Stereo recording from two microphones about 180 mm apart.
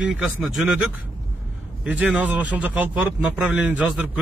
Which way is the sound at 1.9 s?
5° right (ahead or behind).